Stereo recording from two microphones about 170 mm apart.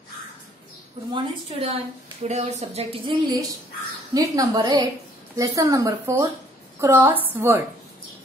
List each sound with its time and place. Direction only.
1.1 s a woman's voice: 30° right (ahead or behind); by 7.6 s 15° right (ahead or behind)